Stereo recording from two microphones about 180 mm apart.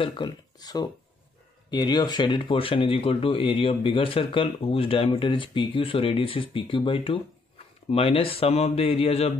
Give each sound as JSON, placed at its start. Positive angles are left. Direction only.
{"t": 0.0, "sound": "speech", "side_deg": 25}